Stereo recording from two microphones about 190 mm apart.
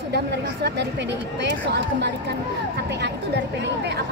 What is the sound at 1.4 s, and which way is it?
Speech, 65° right (ahead or behind).